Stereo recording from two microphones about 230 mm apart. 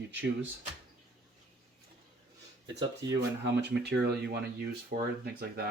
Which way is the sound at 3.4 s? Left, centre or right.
Right.